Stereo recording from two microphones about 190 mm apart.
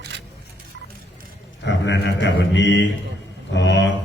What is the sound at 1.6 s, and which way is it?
Speech, 70° left (ahead or behind).